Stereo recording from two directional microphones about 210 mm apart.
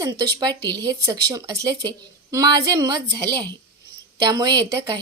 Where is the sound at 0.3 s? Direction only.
20° right (ahead or behind).